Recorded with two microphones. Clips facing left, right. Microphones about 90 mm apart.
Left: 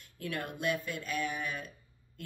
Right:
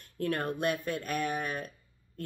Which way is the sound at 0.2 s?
45° right (ahead or behind).